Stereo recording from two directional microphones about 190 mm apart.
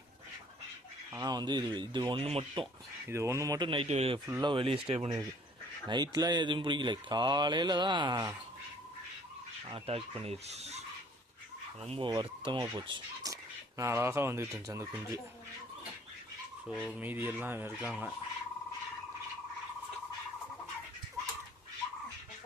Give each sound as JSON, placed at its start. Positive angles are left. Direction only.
{"t": 1.1, "sound": "speech", "side_deg": -20}
{"t": 3.1, "sound": "speech", "side_deg": -15}
{"t": 4.3, "sound": "speech", "side_deg": -20}
{"t": 5.9, "sound": "speech", "side_deg": -20}
{"t": 9.6, "sound": "speech", "side_deg": -30}
{"t": 17.0, "sound": "speech", "side_deg": -10}